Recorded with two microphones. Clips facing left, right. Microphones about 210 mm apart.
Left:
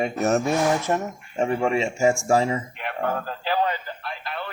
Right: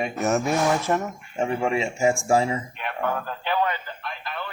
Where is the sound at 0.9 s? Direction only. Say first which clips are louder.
Even; 20° left (ahead or behind).